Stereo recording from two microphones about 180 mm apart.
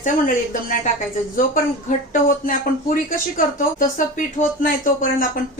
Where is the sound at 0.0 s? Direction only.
50° left (ahead or behind).